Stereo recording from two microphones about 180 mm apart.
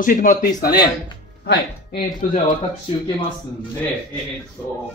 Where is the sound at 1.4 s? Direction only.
65° left (ahead or behind).